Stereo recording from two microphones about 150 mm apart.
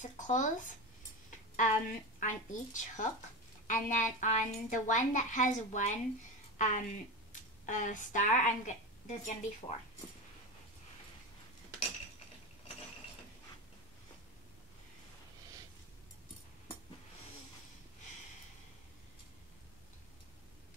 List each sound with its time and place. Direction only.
0.0 s a woman's voice: 55° left (ahead or behind)
2.1 s a woman's voice: 55° left (ahead or behind)